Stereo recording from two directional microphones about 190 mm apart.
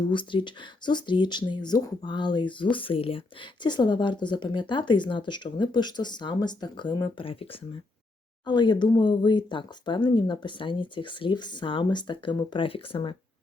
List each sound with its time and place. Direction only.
0.1 s speech: 25° left (ahead or behind)
8.4 s speech: 25° left (ahead or behind)